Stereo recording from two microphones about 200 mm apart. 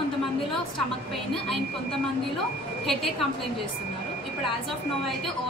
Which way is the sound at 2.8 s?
Centre (ahead or behind).